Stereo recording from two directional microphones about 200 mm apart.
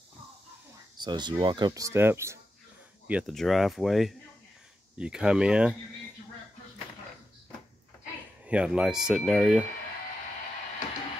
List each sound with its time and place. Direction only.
0.9 s speech: 20° right (ahead or behind); by 5.8 s 5° right (ahead or behind)
8.5 s speech: 5° right (ahead or behind)